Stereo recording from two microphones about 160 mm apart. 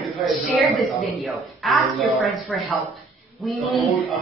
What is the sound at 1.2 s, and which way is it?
Speech, centre (ahead or behind).